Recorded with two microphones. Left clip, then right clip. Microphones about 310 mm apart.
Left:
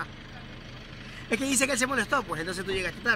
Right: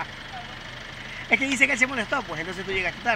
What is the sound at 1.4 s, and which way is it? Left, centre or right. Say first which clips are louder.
Speech: right 4 dB; left.